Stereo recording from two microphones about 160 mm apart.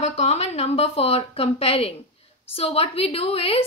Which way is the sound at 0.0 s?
40° left (ahead or behind).